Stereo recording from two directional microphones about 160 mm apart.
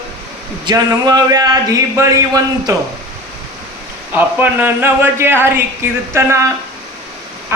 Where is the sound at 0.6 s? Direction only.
25° right (ahead or behind).